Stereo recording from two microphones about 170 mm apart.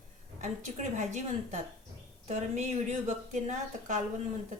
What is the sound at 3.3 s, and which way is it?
Speech, 45° right (ahead or behind).